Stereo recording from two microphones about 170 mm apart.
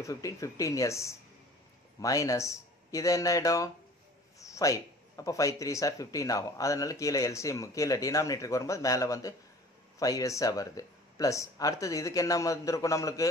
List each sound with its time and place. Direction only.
0.0 s speech: 20° left (ahead or behind)